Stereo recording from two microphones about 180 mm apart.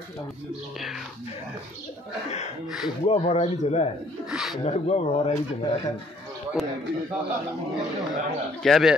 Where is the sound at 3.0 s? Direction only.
35° left (ahead or behind).